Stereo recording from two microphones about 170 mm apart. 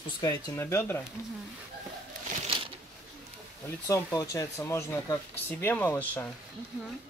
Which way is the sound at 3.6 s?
20° left (ahead or behind).